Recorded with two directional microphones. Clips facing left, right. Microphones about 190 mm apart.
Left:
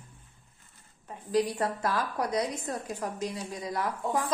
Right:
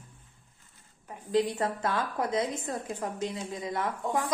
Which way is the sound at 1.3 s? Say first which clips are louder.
Even; 25° right (ahead or behind).